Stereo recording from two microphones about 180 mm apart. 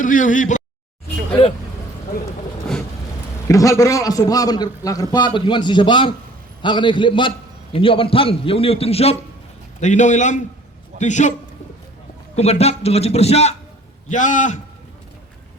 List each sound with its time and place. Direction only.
0.0 s speech: 45° left (ahead or behind)
3.5 s a man's voice: 20° left (ahead or behind); by 11.3 s 40° left (ahead or behind)
12.4 s a man's voice: 35° left (ahead or behind)